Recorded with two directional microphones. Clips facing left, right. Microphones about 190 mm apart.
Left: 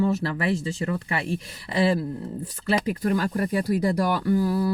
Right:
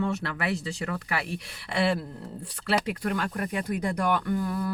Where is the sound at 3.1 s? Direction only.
35° left (ahead or behind).